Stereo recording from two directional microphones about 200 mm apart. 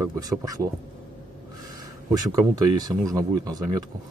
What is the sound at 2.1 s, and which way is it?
Speech, 20° right (ahead or behind).